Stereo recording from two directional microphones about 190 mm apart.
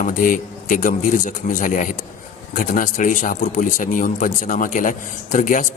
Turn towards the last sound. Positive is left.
turn(degrees=40)  # may be behind; listen again after turning